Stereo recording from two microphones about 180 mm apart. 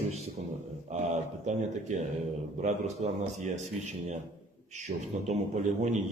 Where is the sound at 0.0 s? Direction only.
35° right (ahead or behind).